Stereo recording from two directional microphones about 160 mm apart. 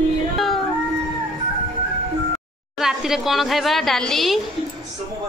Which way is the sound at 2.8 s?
Centre (ahead or behind).